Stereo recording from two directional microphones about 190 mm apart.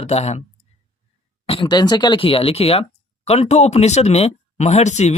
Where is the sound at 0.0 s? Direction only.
35° left (ahead or behind).